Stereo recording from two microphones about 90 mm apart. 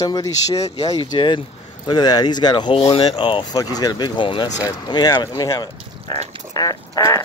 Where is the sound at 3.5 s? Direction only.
45° left (ahead or behind); by 4.5 s 65° left (ahead or behind).